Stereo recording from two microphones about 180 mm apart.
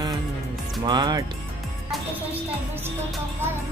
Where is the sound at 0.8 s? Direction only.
25° right (ahead or behind).